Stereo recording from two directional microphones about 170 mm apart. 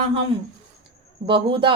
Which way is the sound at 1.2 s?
30° right (ahead or behind).